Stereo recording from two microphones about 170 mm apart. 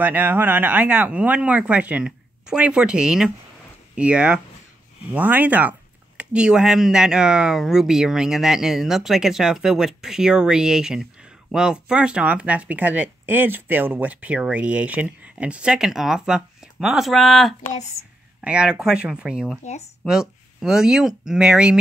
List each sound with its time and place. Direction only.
0.0 s speech: 10° right (ahead or behind)
17.6 s speech: 40° left (ahead or behind)
18.4 s speech: 5° right (ahead or behind)